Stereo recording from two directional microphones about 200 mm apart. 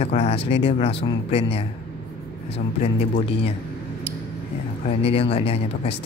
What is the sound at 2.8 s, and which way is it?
Speech, 30° left (ahead or behind).